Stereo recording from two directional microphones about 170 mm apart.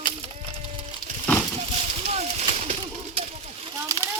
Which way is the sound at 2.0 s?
40° right (ahead or behind).